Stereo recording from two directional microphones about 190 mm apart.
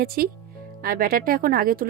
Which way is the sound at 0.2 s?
50° right (ahead or behind).